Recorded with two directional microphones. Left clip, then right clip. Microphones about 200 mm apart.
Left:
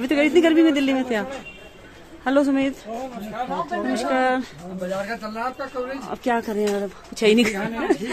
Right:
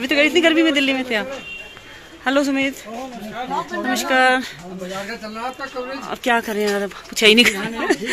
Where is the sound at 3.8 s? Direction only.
5° left (ahead or behind).